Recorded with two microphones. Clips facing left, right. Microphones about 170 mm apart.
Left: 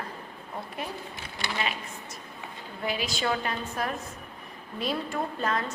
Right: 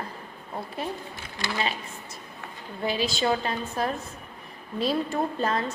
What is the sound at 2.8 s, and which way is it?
A woman's voice, 30° right (ahead or behind).